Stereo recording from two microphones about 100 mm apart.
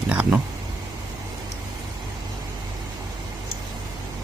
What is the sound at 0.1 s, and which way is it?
Speech, 10° right (ahead or behind).